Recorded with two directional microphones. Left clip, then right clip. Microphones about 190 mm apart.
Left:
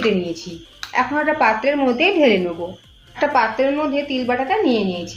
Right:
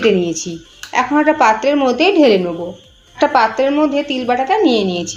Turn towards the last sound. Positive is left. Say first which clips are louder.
# right 5 dB
turn(degrees=-50)  # may be behind; listen again after turning